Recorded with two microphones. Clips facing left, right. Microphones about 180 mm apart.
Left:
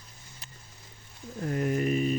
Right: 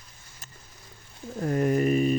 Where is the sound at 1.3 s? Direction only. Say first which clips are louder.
Right 5 dB; 45° right (ahead or behind).